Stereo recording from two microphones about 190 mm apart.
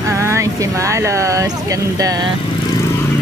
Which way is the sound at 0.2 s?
15° right (ahead or behind).